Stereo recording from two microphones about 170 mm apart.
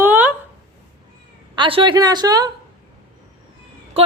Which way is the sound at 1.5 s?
30° right (ahead or behind).